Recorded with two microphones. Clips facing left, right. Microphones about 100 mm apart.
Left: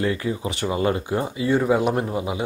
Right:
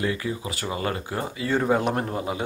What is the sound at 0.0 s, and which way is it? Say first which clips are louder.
Speech: left 3 dB; 30° left (ahead or behind).